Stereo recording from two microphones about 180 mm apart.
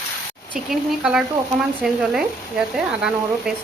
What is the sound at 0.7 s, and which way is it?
Speech, centre (ahead or behind).